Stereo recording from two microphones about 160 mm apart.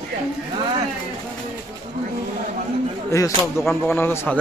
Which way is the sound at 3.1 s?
20° left (ahead or behind).